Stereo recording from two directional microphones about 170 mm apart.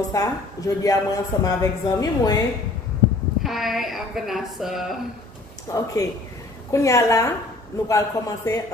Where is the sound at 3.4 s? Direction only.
Centre (ahead or behind).